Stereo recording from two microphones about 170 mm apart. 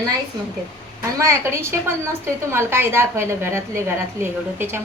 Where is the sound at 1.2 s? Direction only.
15° right (ahead or behind).